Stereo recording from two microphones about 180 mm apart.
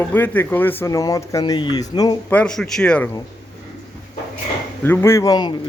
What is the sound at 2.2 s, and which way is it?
Speech, 5° left (ahead or behind).